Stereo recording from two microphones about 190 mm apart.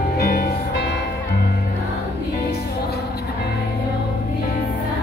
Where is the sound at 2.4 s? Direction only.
55° left (ahead or behind).